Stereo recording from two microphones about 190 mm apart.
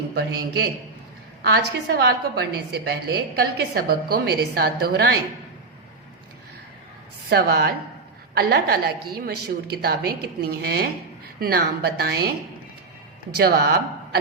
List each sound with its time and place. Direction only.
1.5 s a woman's voice: 55° right (ahead or behind)
7.3 s a woman's voice: 55° right (ahead or behind)
13.3 s speech: 55° right (ahead or behind)